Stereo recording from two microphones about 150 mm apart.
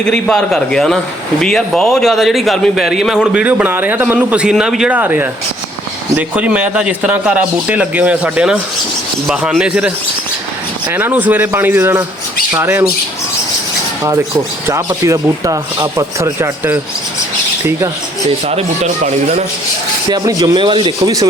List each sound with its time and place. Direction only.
0.0 s a man's voice: 5° left (ahead or behind); by 12.8 s 15° right (ahead or behind)
14.7 s speech: 25° right (ahead or behind)
18.4 s speech: 50° right (ahead or behind)
20.1 s speech: 25° right (ahead or behind)